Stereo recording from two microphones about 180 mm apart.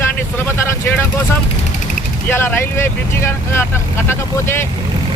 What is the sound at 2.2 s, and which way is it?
Speech, 10° left (ahead or behind).